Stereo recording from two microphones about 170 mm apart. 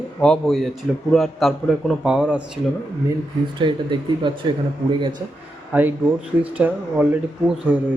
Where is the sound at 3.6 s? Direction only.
25° right (ahead or behind).